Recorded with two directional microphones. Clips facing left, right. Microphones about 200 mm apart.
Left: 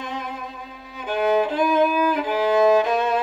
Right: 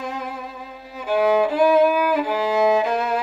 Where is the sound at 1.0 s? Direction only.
5° right (ahead or behind).